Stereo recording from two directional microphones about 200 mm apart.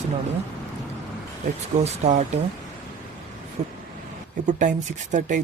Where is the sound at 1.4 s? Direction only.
35° right (ahead or behind).